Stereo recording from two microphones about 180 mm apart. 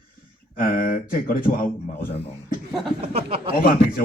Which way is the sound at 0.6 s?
50° left (ahead or behind).